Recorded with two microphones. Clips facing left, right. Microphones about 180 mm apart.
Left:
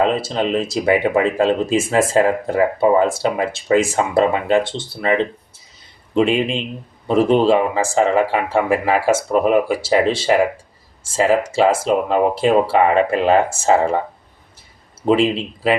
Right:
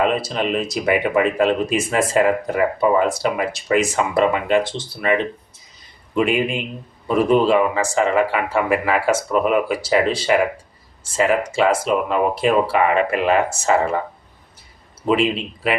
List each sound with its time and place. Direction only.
0.0 s speech: 30° left (ahead or behind)
15.0 s speech: 30° left (ahead or behind)